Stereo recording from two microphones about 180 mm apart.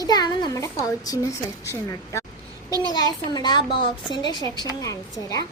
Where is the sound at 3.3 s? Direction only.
25° left (ahead or behind).